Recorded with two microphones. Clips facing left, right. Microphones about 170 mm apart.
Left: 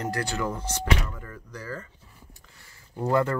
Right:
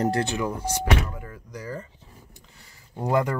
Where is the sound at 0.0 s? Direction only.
25° right (ahead or behind).